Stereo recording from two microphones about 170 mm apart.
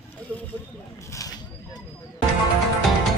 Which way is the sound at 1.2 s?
20° left (ahead or behind).